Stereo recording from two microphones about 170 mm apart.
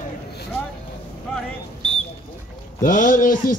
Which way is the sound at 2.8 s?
50° left (ahead or behind).